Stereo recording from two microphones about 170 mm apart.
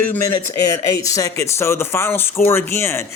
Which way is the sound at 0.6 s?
20° left (ahead or behind).